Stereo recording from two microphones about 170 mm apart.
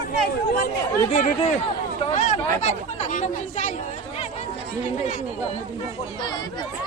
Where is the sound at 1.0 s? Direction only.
40° left (ahead or behind).